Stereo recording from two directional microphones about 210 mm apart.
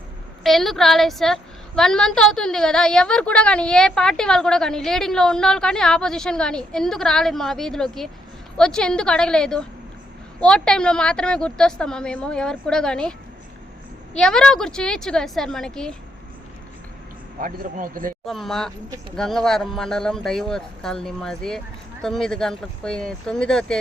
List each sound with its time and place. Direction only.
0.4 s a woman's voice: centre (ahead or behind)
17.4 s speech: 40° right (ahead or behind)
18.3 s a woman's voice: centre (ahead or behind)